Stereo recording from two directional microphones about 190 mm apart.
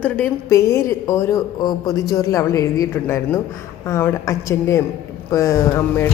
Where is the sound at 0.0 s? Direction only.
10° left (ahead or behind).